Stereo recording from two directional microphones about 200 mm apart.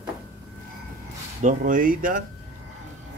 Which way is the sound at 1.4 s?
40° right (ahead or behind).